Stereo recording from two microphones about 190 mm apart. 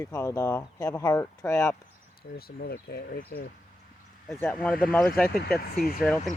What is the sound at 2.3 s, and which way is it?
Speech, 55° left (ahead or behind).